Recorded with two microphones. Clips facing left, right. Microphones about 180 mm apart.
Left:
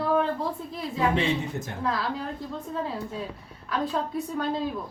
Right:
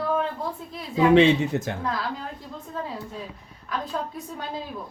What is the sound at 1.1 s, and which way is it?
Speech, 85° right.